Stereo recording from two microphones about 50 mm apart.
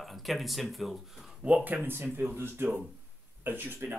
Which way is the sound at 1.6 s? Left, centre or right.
Right.